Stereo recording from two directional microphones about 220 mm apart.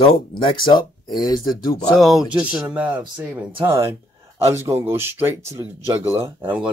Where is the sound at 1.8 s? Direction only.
Centre (ahead or behind).